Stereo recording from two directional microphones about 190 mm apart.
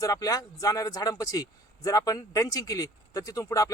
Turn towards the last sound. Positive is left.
turn(degrees=15)  # may be behind; listen again after turning